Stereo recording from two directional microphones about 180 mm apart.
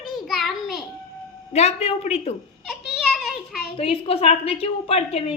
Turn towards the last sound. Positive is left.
turn(degrees=35)  # may be behind; listen again after turning